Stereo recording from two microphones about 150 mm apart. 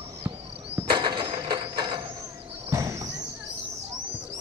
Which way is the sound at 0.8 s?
30° right (ahead or behind).